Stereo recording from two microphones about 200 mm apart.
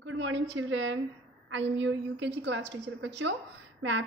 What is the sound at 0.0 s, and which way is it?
A woman's voice, 70° right (ahead or behind).